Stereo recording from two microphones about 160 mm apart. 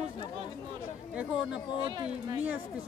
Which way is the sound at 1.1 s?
5° right (ahead or behind).